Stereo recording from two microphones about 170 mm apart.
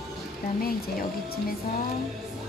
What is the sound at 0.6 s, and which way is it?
Music, 60° left (ahead or behind).